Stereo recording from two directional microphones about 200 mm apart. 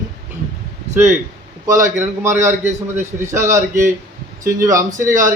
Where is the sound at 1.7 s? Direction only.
40° right (ahead or behind).